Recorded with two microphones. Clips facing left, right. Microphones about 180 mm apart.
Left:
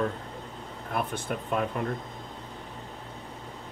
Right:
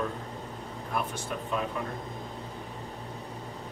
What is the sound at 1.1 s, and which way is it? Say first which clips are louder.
Speech: left 3 dB; 55° left (ahead or behind).